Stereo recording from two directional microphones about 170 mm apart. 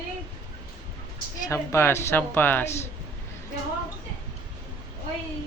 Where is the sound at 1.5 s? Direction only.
15° left (ahead or behind).